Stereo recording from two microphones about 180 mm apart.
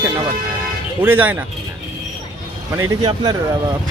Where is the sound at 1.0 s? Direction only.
10° right (ahead or behind).